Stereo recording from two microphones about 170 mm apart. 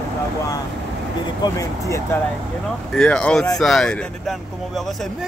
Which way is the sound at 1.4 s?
20° left (ahead or behind).